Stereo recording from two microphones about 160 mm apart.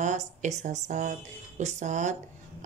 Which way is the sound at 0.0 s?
50° right (ahead or behind).